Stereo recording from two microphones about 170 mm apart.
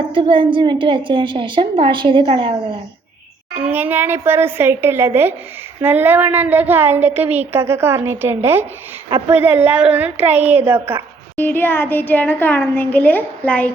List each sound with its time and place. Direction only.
0.1 s a woman's voice: 30° right (ahead or behind)
3.7 s a woman's voice: 10° right (ahead or behind)
11.3 s a child's voice: 10° left (ahead or behind)